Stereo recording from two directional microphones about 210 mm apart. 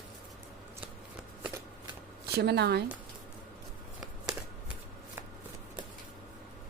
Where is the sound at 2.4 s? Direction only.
50° right (ahead or behind).